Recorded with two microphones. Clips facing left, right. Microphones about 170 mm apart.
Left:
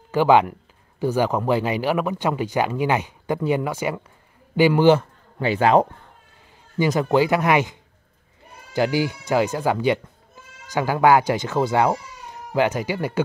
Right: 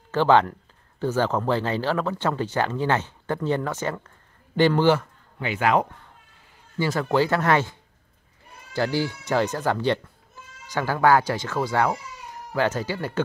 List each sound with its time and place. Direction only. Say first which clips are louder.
0.1 s speech: left 2 dB; 10° left (ahead or behind)
5.4 s a man's voice: left 5 dB; 30° left (ahead or behind)
6.8 s speech: left 4 dB; 15° left (ahead or behind)
8.7 s speech: left 3 dB; 15° left (ahead or behind)